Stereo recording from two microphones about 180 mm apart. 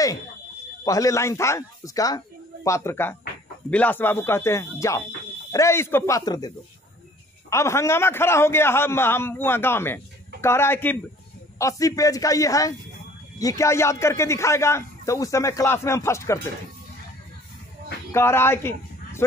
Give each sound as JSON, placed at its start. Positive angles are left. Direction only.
{"t": 0.8, "sound": "a man's voice", "side_deg": 20}
{"t": 18.1, "sound": "a man's voice", "side_deg": 15}